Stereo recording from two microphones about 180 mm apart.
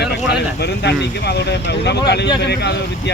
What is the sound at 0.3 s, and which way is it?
Speech, 65° left (ahead or behind).